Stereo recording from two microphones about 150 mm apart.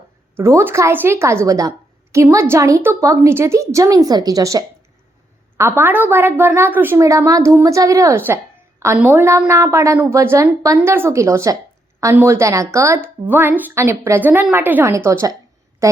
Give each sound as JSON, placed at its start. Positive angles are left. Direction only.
{"t": 0.3, "sound": "a woman's voice", "side_deg": -15}